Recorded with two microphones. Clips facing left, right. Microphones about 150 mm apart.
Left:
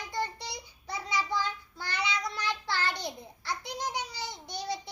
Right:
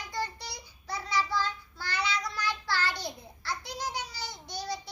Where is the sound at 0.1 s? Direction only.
20° left (ahead or behind).